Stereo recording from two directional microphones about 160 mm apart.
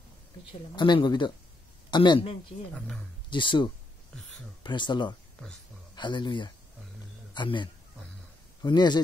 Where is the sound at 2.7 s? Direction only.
5° left (ahead or behind).